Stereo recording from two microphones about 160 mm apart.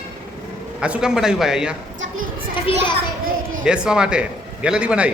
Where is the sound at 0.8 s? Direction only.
5° right (ahead or behind).